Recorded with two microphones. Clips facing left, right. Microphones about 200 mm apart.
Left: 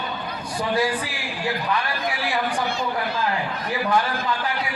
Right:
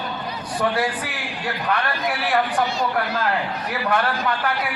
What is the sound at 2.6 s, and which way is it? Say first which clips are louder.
Speech: right 2 dB; 55° left (ahead or behind).